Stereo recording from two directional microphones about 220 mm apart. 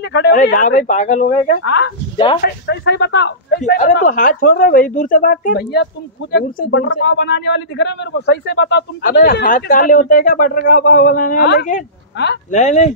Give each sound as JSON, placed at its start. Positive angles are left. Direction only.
{"t": 0.0, "sound": "a sound", "side_deg": 50}
{"t": 0.3, "sound": "speech", "side_deg": 35}
{"t": 2.4, "sound": "speech", "side_deg": 50}
{"t": 4.0, "sound": "speech", "side_deg": 35}
{"t": 12.4, "sound": "speech", "side_deg": 30}